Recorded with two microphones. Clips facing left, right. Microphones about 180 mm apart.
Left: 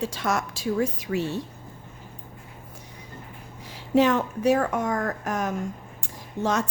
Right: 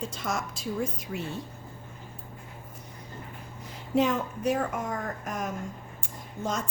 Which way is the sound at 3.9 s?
80° left.